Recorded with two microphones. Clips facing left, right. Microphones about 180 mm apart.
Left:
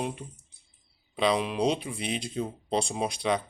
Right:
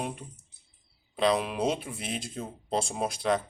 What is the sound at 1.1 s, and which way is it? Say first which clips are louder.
Speech: even; centre (ahead or behind).